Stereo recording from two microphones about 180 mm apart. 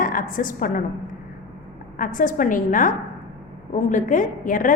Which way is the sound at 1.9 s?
50° left (ahead or behind).